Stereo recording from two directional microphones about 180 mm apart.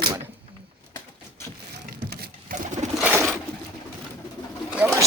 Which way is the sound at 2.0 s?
60° right (ahead or behind).